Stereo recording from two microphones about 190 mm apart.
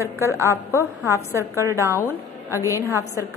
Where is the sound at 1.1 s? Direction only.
15° right (ahead or behind).